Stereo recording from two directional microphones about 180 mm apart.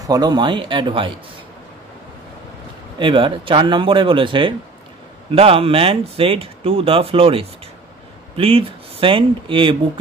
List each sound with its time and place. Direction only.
0.0 s speech: 20° right (ahead or behind)
3.0 s speech: 25° right (ahead or behind)